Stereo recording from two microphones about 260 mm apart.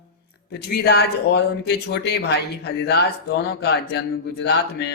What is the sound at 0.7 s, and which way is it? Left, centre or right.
Speech, left.